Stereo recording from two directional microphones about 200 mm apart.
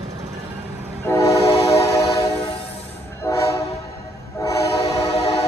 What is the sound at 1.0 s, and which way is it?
Train, 15° left (ahead or behind).